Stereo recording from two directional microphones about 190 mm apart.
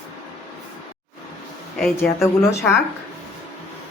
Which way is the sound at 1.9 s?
15° left (ahead or behind).